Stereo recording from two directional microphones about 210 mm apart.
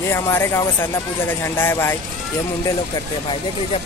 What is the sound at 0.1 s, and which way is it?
Speech, 10° left (ahead or behind).